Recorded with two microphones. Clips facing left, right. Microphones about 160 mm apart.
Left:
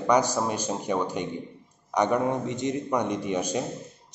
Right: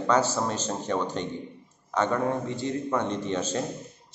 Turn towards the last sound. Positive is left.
turn(degrees=15)  # may be behind; listen again after turning